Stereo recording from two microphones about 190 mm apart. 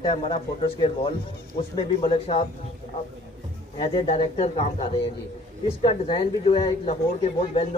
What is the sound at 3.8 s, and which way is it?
Speech, 30° left (ahead or behind).